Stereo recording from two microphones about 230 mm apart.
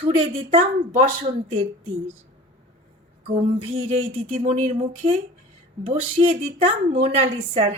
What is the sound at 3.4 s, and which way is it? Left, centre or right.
Speech, right.